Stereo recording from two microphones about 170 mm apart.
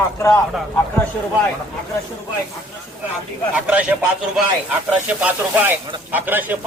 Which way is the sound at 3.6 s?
5° right (ahead or behind).